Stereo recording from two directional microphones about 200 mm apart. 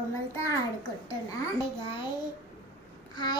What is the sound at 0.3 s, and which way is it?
A child's voice, 15° left (ahead or behind).